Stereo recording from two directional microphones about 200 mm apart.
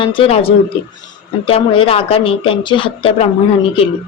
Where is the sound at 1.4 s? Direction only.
25° left (ahead or behind).